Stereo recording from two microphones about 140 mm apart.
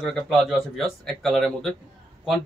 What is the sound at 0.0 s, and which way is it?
Speech, centre (ahead or behind).